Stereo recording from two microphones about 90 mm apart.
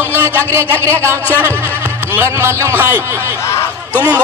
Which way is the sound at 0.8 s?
30° right (ahead or behind).